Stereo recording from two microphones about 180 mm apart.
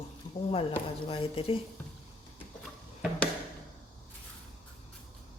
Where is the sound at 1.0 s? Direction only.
30° left (ahead or behind).